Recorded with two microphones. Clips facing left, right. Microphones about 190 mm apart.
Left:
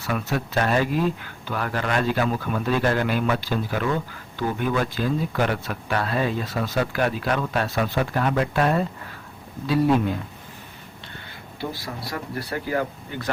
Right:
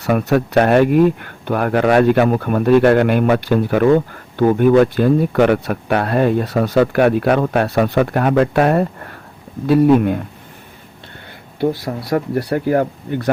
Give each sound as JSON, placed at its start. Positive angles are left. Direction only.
{"t": 0.0, "sound": "speech", "side_deg": -60}
{"t": 11.6, "sound": "speech", "side_deg": -55}